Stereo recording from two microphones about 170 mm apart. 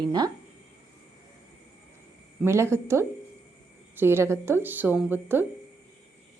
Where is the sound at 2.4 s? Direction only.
15° right (ahead or behind).